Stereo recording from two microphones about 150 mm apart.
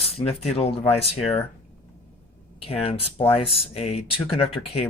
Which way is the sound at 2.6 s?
40° left (ahead or behind).